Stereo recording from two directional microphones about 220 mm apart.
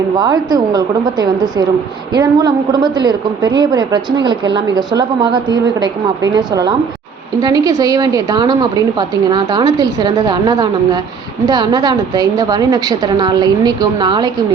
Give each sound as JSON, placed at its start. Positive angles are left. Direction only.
{"t": 0.2, "sound": "a woman's voice", "side_deg": -20}